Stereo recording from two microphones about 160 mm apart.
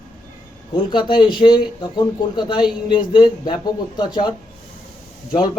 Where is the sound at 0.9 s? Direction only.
30° left (ahead or behind).